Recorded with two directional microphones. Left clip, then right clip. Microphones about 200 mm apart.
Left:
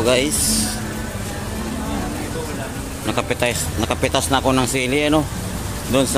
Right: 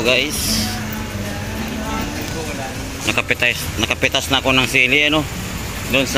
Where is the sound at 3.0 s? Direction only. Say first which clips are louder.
Right 3 dB; 10° left (ahead or behind).